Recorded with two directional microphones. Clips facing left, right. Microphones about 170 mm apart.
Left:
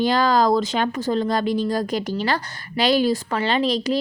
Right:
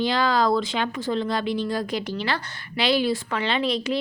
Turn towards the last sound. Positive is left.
turn(degrees=35)  # may be behind; listen again after turning